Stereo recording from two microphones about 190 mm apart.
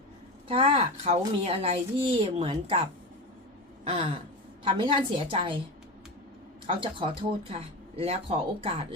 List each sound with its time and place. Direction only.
0.4 s speech: 30° right (ahead or behind)
3.8 s speech: 30° right (ahead or behind)
6.7 s speech: 25° right (ahead or behind)